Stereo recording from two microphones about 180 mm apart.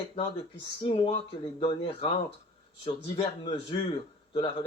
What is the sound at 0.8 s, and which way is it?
Speech, 30° left (ahead or behind).